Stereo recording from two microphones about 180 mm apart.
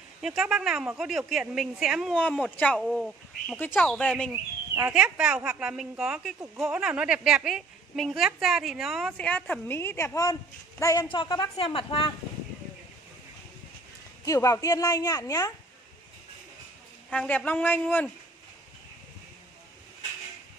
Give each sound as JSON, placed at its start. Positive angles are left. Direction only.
{"t": 0.2, "sound": "speech", "side_deg": 0}
{"t": 4.3, "sound": "a woman's voice", "side_deg": -10}
{"t": 14.2, "sound": "a woman's voice", "side_deg": 20}
{"t": 17.1, "sound": "a man's voice", "side_deg": 5}